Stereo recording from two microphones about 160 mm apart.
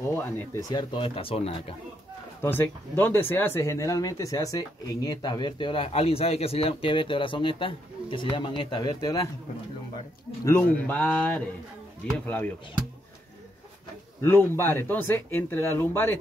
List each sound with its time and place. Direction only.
0.0 s speech: 15° left (ahead or behind)
0.7 s speech: 30° left (ahead or behind)
2.4 s speech: 15° left (ahead or behind)
10.4 s speech: 10° left (ahead or behind)
14.2 s speech: 15° left (ahead or behind)